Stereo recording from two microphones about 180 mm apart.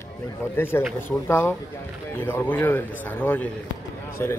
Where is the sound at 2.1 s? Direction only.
10° left (ahead or behind).